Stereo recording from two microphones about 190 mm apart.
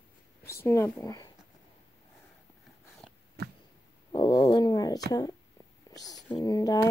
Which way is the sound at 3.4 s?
60° right (ahead or behind).